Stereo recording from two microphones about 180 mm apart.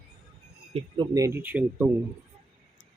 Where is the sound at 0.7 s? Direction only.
25° right (ahead or behind); by 1.9 s 10° right (ahead or behind).